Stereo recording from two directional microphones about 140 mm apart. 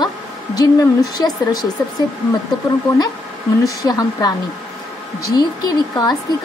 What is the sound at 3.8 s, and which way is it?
Speech, 25° left (ahead or behind).